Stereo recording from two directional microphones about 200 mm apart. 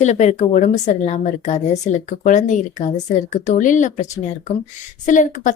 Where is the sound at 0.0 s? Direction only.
35° left (ahead or behind).